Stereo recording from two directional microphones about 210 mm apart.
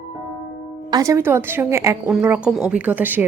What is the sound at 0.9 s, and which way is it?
A woman's voice, 15° right (ahead or behind).